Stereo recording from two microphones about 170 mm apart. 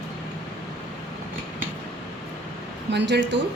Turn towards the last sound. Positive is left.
turn(degrees=-90)